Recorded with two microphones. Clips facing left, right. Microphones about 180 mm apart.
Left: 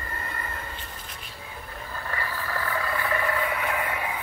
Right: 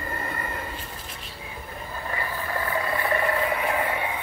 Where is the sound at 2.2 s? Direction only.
20° right (ahead or behind).